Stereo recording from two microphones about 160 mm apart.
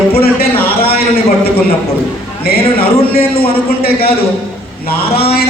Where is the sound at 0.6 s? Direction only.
70° left (ahead or behind).